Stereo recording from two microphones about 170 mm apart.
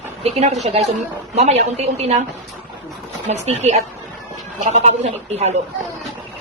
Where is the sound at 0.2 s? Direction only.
40° right (ahead or behind).